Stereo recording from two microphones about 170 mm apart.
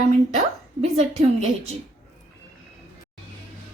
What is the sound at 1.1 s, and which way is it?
Speech, 40° right (ahead or behind).